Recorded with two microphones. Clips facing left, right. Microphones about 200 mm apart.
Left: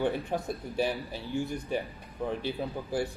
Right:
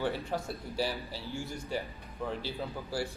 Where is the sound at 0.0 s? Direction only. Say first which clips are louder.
Left 4 dB; 15° left (ahead or behind).